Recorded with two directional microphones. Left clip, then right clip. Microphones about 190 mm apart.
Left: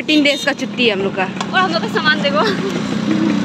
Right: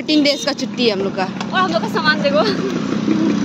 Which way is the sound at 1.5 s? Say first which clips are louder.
Left 1 dB; 65° right (ahead or behind).